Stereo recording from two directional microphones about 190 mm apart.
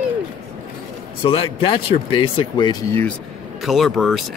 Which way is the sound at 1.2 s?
30° left (ahead or behind).